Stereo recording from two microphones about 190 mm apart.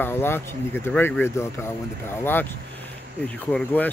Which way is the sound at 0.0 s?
10° left (ahead or behind).